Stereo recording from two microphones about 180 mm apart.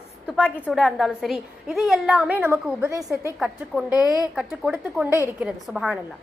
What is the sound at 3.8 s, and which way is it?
Speech, 20° left (ahead or behind).